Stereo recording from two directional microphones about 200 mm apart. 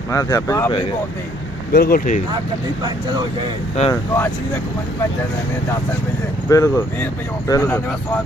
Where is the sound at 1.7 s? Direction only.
50° left (ahead or behind).